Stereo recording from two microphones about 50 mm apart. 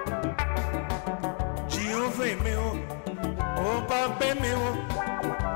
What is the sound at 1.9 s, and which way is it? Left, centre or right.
Music, left.